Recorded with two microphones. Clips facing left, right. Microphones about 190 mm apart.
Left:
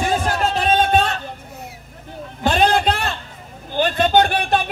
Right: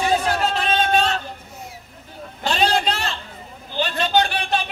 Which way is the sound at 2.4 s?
50° left (ahead or behind).